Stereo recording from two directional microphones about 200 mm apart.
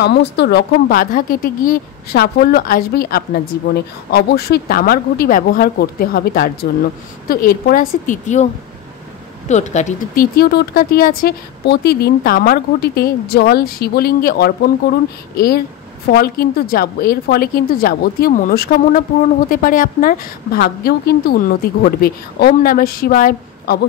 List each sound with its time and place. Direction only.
0.0 s speech: 60° left (ahead or behind); by 8.5 s 40° left (ahead or behind)
9.5 s speech: 35° left (ahead or behind)